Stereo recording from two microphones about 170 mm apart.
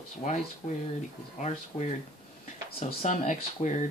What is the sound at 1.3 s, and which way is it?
Speech, 40° left (ahead or behind).